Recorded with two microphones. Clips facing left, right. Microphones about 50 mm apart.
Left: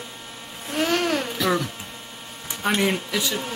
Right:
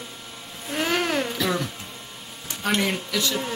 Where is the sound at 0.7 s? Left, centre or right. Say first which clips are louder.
Left 2 dB; centre.